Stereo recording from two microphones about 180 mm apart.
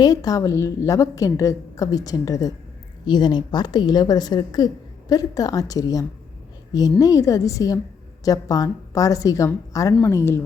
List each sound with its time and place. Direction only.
0.0 s a woman's voice: 20° left (ahead or behind)